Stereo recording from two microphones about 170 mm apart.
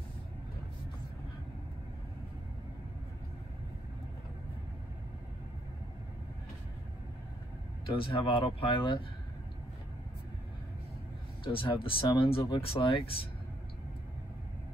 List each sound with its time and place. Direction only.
7.8 s speech: 30° left (ahead or behind)
11.4 s speech: 30° left (ahead or behind)